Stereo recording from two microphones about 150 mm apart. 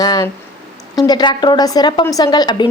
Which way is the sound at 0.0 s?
25° left (ahead or behind).